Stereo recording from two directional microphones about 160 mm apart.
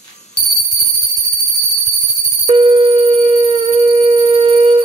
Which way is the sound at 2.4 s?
35° right (ahead or behind).